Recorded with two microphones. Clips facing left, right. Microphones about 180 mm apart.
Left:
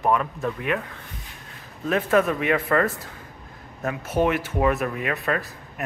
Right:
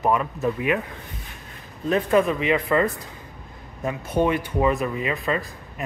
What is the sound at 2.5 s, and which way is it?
Speech, 15° right (ahead or behind).